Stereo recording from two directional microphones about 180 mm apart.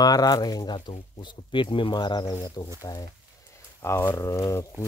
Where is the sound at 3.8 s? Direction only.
15° left (ahead or behind).